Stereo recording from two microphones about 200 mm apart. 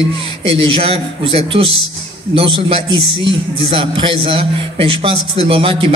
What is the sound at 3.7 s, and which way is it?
A man's voice, 25° right (ahead or behind).